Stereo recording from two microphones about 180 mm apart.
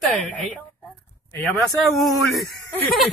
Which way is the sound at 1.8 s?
Centre (ahead or behind).